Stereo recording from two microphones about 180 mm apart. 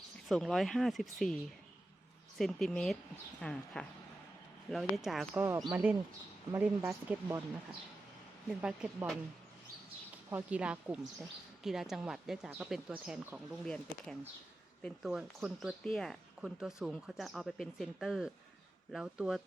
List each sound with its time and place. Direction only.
0.3 s speech: centre (ahead or behind)
2.4 s speech: centre (ahead or behind)
5.4 s speech: 20° right (ahead or behind)
8.6 s speech: 5° right (ahead or behind)
10.2 s speech: 10° right (ahead or behind)